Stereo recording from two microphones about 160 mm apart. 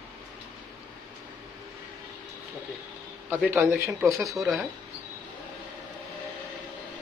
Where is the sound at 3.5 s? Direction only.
15° right (ahead or behind).